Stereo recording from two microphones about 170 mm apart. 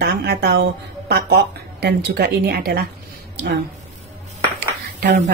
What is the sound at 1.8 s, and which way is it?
Speech, 70° right (ahead or behind).